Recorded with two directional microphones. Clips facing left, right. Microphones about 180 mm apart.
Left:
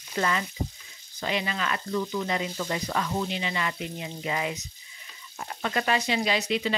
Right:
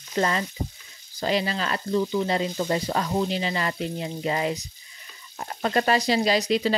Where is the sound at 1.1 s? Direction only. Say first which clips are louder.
Right 5 dB; 35° right (ahead or behind).